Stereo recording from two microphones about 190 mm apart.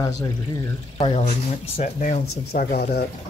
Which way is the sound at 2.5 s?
50° left (ahead or behind).